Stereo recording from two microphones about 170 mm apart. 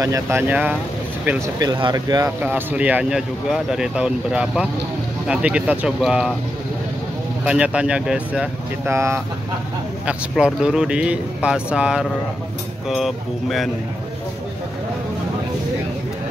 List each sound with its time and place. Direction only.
0.0 s speech: 15° right (ahead or behind)
1.6 s speech: 25° right (ahead or behind)
2.4 s speech: 10° right (ahead or behind)
7.4 s speech: 5° right (ahead or behind)